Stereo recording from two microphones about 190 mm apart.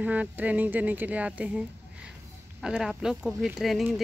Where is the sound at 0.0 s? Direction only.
10° right (ahead or behind).